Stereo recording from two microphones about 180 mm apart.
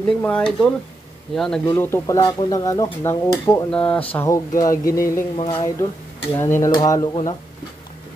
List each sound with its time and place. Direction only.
0.2 s speech: 5° left (ahead or behind)
1.7 s speech: 10° left (ahead or behind)